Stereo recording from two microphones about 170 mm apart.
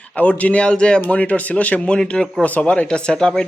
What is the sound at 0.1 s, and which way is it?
Speech, 5° left (ahead or behind).